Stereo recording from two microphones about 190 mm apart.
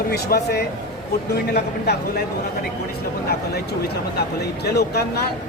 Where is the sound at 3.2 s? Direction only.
55° left (ahead or behind).